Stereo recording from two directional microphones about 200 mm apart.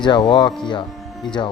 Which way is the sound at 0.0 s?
20° left (ahead or behind).